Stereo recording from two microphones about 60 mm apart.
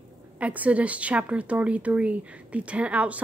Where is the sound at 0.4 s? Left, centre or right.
Right.